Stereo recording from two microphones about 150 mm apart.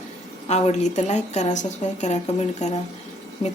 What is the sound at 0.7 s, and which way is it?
Speech, 50° left (ahead or behind).